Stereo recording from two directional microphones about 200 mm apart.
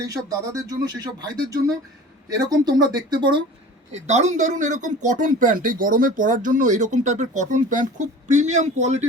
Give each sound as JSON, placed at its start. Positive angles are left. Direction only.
{"t": 0.0, "sound": "speech", "side_deg": -15}
{"t": 3.9, "sound": "speech", "side_deg": -35}